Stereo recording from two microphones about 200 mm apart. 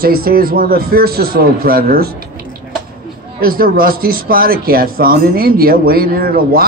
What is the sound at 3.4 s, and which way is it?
Speech, 45° right (ahead or behind).